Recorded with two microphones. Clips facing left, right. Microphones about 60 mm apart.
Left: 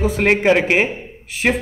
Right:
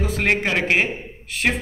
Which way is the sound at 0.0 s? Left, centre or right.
Centre.